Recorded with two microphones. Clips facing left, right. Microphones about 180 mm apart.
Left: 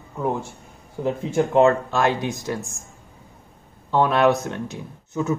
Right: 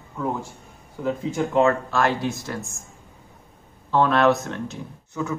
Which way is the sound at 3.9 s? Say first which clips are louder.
Left 1 dB; 15° left (ahead or behind).